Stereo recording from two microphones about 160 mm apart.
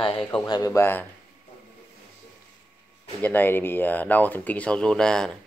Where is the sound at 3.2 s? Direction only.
10° left (ahead or behind).